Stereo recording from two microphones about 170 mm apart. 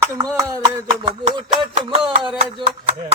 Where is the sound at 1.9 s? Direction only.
35° right (ahead or behind).